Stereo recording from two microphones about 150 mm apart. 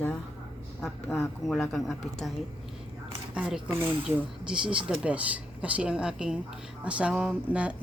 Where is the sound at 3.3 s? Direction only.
5° right (ahead or behind).